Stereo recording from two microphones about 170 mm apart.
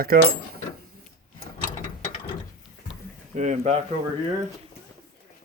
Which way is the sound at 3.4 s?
45° right (ahead or behind).